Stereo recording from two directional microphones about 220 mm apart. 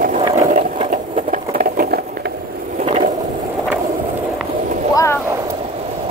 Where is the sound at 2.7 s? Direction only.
30° right (ahead or behind).